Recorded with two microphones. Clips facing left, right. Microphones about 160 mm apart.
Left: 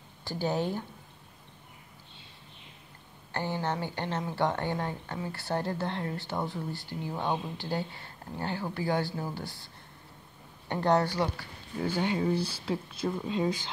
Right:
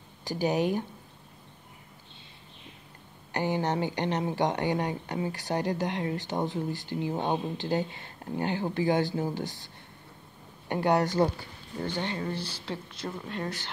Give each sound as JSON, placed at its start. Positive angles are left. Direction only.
{"t": 0.2, "sound": "speech", "side_deg": -15}
{"t": 3.3, "sound": "a woman's voice", "side_deg": -15}
{"t": 10.7, "sound": "speech", "side_deg": -10}
{"t": 11.2, "sound": "speech", "side_deg": -35}
{"t": 11.8, "sound": "speech", "side_deg": 10}